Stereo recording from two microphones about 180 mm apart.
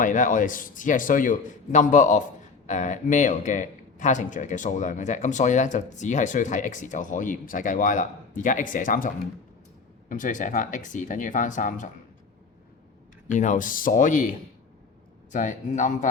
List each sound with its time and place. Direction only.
0.0 s speech: 45° left (ahead or behind)
13.2 s speech: 45° left (ahead or behind)